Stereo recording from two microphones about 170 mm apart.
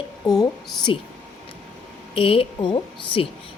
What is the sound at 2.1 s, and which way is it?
A woman's voice, 35° left (ahead or behind).